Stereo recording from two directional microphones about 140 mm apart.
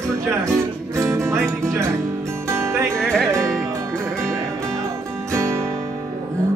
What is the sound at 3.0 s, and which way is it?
Music, 5° left (ahead or behind).